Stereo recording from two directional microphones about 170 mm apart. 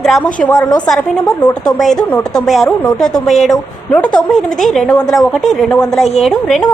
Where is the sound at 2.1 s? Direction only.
Centre (ahead or behind).